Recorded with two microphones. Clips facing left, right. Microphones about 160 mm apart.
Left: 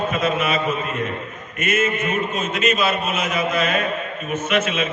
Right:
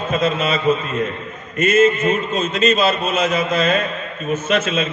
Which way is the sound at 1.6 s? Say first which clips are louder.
Right 7 dB; 30° right (ahead or behind).